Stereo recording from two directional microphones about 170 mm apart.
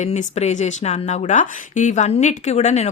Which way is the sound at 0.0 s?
40° left (ahead or behind).